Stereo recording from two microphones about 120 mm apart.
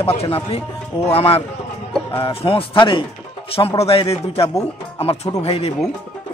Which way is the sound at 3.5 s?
55° left (ahead or behind).